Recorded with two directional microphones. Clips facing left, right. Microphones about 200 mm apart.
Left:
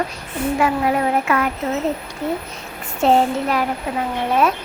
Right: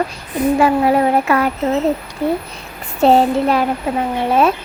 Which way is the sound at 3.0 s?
30° right (ahead or behind).